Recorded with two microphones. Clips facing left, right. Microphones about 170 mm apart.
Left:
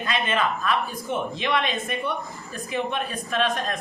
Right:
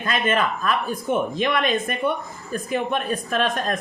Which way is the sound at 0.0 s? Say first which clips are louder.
Right 3 dB; 45° right (ahead or behind).